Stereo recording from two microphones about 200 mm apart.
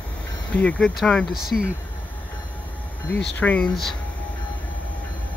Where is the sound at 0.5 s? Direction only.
5° left (ahead or behind).